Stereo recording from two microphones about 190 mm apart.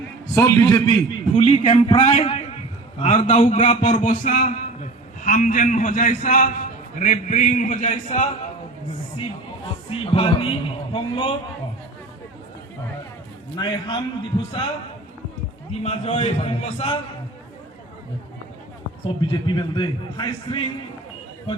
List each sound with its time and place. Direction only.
0.3 s a man's voice: 15° left (ahead or behind)
1.4 s a man's voice: 30° left (ahead or behind)
9.9 s a man's voice: 30° left (ahead or behind)
13.6 s a man's voice: 25° left (ahead or behind)
15.7 s a man's voice: 35° left (ahead or behind)
19.0 s a man's voice: 25° left (ahead or behind)